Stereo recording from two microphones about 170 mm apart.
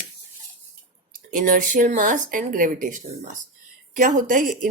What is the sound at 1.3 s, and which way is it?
A woman's voice, 50° right (ahead or behind).